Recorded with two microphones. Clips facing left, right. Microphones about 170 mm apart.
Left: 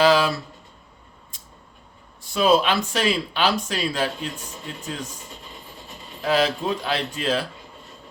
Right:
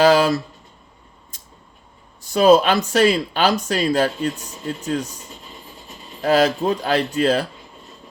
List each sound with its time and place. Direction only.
0.0 s a sound: 45° right (ahead or behind)
2.2 s speech: 45° right (ahead or behind)
6.2 s speech: 45° right (ahead or behind)